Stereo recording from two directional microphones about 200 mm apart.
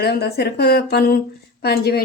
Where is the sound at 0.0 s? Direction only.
55° left (ahead or behind).